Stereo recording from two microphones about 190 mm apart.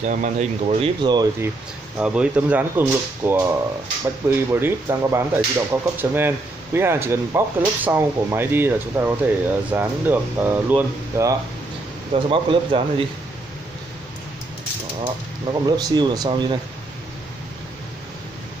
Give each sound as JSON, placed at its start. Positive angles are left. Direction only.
{"t": 0.0, "sound": "speech", "side_deg": -40}
{"t": 2.0, "sound": "speech", "side_deg": -5}
{"t": 12.1, "sound": "speech", "side_deg": -25}
{"t": 15.6, "sound": "speech", "side_deg": -20}